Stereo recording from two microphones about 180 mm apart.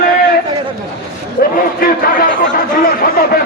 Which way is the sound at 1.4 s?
60° left (ahead or behind).